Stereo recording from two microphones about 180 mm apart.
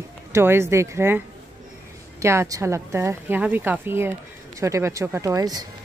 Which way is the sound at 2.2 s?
15° right (ahead or behind).